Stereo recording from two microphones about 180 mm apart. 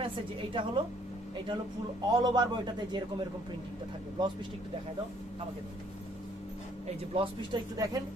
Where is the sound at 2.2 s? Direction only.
25° right (ahead or behind).